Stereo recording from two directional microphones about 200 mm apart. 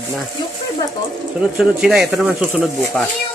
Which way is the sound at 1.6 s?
5° right (ahead or behind).